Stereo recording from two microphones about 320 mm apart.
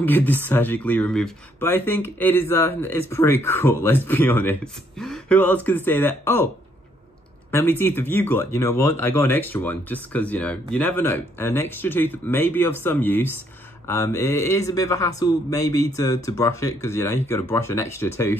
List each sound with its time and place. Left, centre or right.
0.0 s speech: centre
7.5 s speech: centre